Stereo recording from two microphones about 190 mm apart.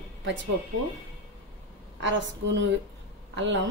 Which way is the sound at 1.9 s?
75° right (ahead or behind).